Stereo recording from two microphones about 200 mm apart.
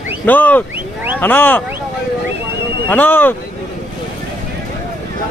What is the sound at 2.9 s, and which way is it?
Speech, 10° left (ahead or behind).